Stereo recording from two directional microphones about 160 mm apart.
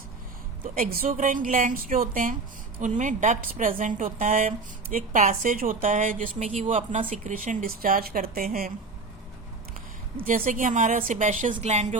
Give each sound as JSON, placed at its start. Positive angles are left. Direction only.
{"t": 0.6, "sound": "a woman's voice", "side_deg": -60}
{"t": 10.2, "sound": "a woman's voice", "side_deg": -55}